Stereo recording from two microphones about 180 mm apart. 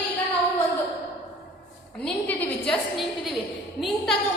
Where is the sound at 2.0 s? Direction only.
5° left (ahead or behind).